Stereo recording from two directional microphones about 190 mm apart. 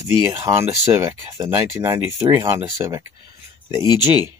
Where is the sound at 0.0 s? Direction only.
15° right (ahead or behind).